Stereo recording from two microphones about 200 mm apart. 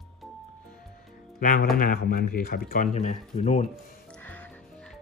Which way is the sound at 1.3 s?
45° left (ahead or behind).